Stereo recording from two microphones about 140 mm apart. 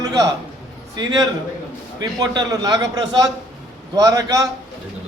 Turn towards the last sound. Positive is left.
turn(degrees=-25)  # may be behind; listen again after turning